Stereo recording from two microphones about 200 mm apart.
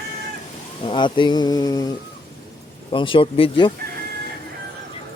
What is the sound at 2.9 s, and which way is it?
Speech, 25° left (ahead or behind).